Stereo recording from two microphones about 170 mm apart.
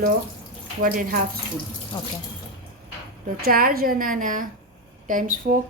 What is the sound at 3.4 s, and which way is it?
A woman's voice, 60° right (ahead or behind).